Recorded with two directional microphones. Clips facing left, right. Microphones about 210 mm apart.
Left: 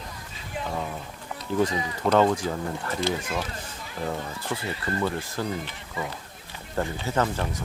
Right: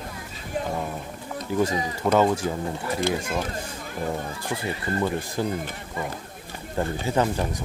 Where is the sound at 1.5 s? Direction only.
5° right (ahead or behind).